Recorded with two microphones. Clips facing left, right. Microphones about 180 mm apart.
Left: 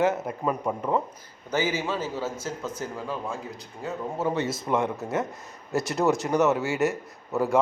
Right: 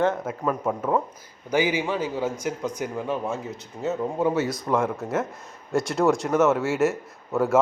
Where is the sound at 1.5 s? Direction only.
15° right (ahead or behind).